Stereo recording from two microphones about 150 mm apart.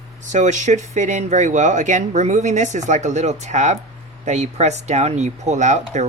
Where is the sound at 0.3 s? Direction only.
55° right (ahead or behind).